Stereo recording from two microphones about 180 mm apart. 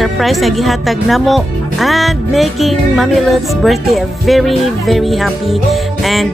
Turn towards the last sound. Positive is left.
turn(degrees=0)  # may be behind; listen again after turning